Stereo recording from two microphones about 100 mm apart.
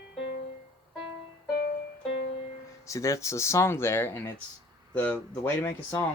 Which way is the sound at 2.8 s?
30° left (ahead or behind).